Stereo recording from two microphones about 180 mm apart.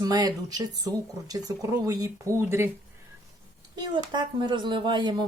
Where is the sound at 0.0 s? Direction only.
20° right (ahead or behind).